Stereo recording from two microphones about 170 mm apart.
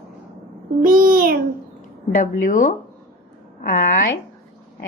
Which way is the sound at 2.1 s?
50° left (ahead or behind).